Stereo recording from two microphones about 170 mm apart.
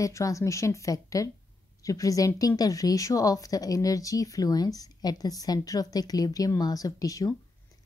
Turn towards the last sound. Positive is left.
turn(degrees=20)  # may be behind; listen again after turning